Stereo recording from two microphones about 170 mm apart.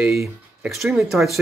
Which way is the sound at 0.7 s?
Centre (ahead or behind).